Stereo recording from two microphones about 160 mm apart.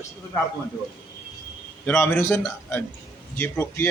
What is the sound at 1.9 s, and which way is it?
Speech, 10° left (ahead or behind).